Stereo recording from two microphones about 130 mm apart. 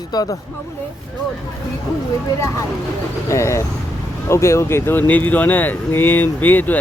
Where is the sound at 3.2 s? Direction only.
20° left (ahead or behind).